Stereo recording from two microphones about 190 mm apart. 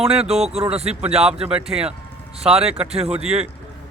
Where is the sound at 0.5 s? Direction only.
35° right (ahead or behind).